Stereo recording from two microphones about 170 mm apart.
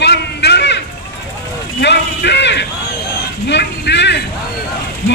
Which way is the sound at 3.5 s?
90° left.